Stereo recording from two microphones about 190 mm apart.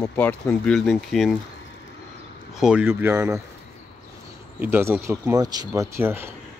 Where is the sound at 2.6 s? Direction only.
5° right (ahead or behind).